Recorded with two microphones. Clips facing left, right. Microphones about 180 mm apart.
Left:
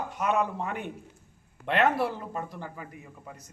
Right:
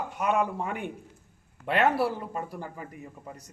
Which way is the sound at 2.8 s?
40° right (ahead or behind).